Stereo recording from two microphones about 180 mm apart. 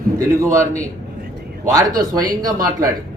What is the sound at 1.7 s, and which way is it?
A man's voice, 20° right (ahead or behind).